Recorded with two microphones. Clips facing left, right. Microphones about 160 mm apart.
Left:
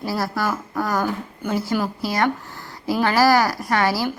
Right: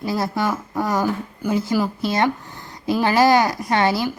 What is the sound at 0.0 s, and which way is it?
Speech, 20° right (ahead or behind).